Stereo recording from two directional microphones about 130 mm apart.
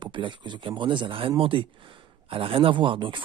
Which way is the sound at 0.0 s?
40° right (ahead or behind).